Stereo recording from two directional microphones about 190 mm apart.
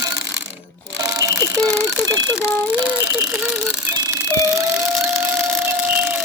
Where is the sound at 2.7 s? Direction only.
10° right (ahead or behind).